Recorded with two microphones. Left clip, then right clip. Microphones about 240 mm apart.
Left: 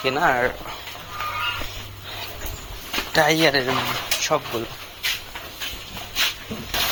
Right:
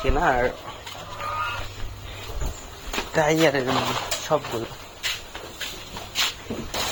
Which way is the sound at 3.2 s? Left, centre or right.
Centre.